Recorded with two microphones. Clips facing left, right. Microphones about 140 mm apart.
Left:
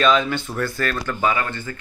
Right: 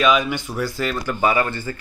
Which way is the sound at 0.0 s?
10° right (ahead or behind).